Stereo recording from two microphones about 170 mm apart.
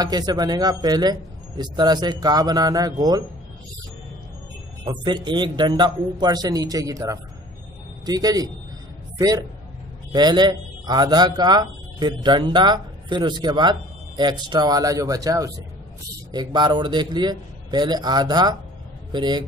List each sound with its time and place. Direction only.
0.0 s a man's voice: 25° right (ahead or behind)
4.8 s a man's voice: 25° right (ahead or behind)
10.1 s a man's voice: 25° right (ahead or behind)